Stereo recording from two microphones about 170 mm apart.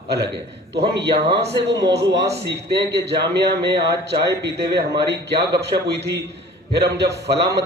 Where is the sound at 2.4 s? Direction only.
85° right.